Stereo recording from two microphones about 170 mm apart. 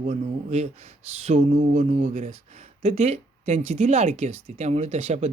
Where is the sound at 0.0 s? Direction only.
40° right (ahead or behind).